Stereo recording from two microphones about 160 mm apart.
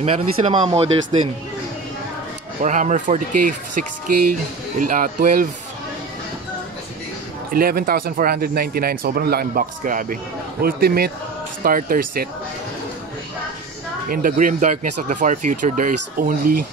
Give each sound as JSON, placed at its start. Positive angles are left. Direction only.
{"t": 0.0, "sound": "speech", "side_deg": -40}
{"t": 2.6, "sound": "speech", "side_deg": -50}
{"t": 7.5, "sound": "speech", "side_deg": -65}
{"t": 10.6, "sound": "speech", "side_deg": -70}
{"t": 11.6, "sound": "speech", "side_deg": -60}
{"t": 14.0, "sound": "speech", "side_deg": -60}